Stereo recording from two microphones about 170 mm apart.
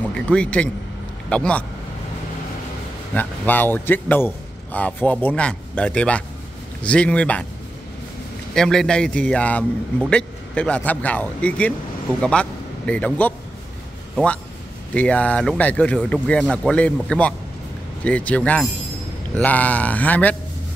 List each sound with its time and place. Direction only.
0.1 s a man's voice: 5° left (ahead or behind)
3.2 s a man's voice: 10° left (ahead or behind)
8.5 s a man's voice: 5° left (ahead or behind)
15.0 s a man's voice: 5° left (ahead or behind)